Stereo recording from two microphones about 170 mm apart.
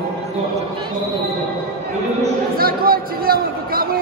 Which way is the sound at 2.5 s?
60° right (ahead or behind).